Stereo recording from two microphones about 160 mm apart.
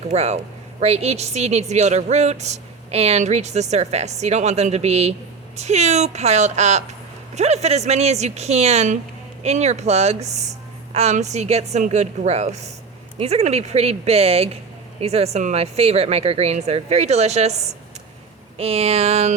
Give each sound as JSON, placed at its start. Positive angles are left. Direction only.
{"t": 0.1, "sound": "speech", "side_deg": -40}